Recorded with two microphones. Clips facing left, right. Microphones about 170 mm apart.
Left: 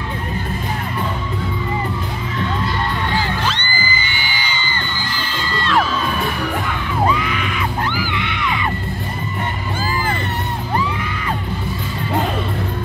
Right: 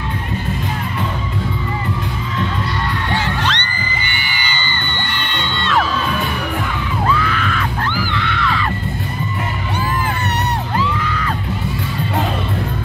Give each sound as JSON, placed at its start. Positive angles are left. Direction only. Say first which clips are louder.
{"t": 3.5, "sound": "music", "louder": "left 1 dB", "side_deg": -70}
{"t": 4.6, "sound": "crowd", "louder": "even", "side_deg": 0}
{"t": 4.9, "sound": "music", "louder": "right 1 dB", "side_deg": -65}
{"t": 5.3, "sound": "music", "louder": "even", "side_deg": 0}
{"t": 7.1, "sound": "screaming", "louder": "right 1 dB", "side_deg": 15}
{"t": 8.1, "sound": "music", "louder": "right 2 dB", "side_deg": 15}